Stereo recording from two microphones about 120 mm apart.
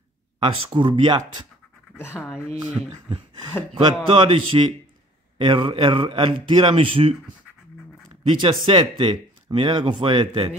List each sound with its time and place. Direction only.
0.4 s speech: 50° right (ahead or behind)
2.0 s speech: 20° left (ahead or behind)
3.7 s speech: 45° right (ahead or behind)